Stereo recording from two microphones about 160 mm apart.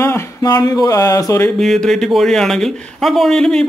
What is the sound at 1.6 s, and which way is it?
Speech, centre (ahead or behind).